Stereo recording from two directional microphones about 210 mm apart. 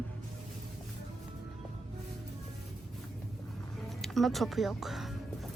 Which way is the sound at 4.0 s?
Centre (ahead or behind).